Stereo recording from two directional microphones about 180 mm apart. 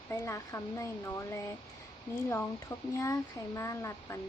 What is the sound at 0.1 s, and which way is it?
Speech, 15° left (ahead or behind).